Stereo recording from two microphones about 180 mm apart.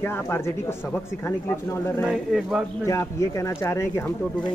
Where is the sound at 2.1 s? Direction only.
Centre (ahead or behind).